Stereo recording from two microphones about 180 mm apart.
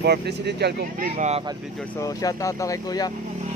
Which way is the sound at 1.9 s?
20° left (ahead or behind).